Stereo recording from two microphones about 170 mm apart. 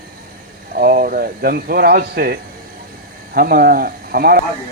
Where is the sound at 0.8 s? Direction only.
55° right (ahead or behind).